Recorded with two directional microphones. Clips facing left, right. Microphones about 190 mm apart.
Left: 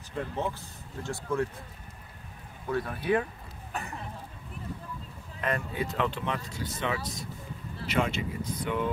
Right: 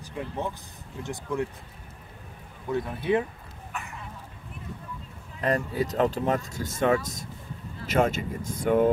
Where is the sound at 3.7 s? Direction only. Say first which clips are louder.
Left 2 dB; 35° left (ahead or behind).